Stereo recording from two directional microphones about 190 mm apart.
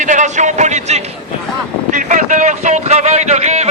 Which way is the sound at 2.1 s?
40° right (ahead or behind).